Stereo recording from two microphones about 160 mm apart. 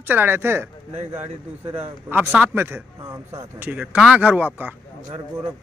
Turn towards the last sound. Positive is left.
turn(degrees=-20)  # may be behind; listen again after turning